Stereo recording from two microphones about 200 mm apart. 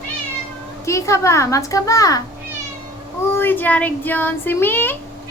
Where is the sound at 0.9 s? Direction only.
15° left (ahead or behind).